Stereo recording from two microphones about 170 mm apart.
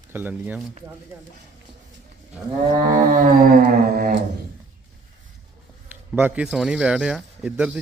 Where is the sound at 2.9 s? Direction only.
50° right (ahead or behind).